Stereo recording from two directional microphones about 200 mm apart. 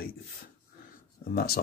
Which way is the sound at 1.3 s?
50° left (ahead or behind).